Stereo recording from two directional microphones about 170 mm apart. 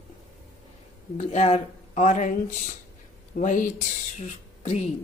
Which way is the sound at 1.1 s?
40° left (ahead or behind).